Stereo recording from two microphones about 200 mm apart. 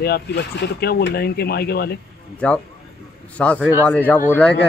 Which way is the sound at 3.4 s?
5° left (ahead or behind).